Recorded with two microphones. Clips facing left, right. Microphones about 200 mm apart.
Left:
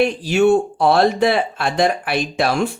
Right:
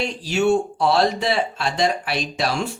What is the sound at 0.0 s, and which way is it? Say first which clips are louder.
Speech: left 6 dB; 55° left (ahead or behind).